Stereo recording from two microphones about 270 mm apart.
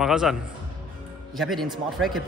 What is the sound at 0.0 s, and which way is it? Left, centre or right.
Speech, centre.